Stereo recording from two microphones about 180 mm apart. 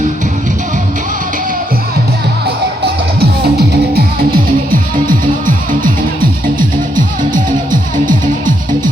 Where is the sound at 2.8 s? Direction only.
60° right (ahead or behind); by 8.9 s 45° right (ahead or behind).